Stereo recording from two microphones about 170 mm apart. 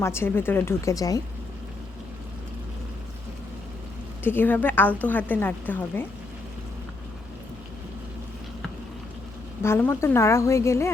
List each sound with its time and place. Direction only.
0.0 s a woman's voice: 15° left (ahead or behind)
4.2 s a woman's voice: 10° left (ahead or behind)
9.6 s a woman's voice: 15° left (ahead or behind)